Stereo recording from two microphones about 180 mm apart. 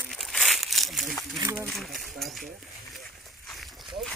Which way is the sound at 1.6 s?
Centre (ahead or behind).